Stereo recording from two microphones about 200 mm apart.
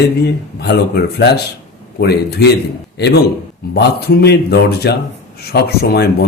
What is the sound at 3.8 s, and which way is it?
Speech, 55° left (ahead or behind).